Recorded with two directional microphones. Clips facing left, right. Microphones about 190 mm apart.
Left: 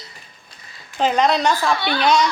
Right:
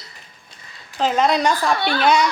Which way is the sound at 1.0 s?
5° right (ahead or behind).